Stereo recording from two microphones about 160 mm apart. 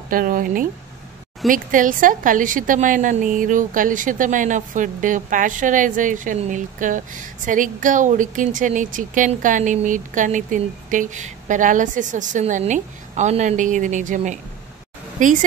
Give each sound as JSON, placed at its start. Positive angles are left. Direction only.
{"t": 0.1, "sound": "a woman's voice", "side_deg": -60}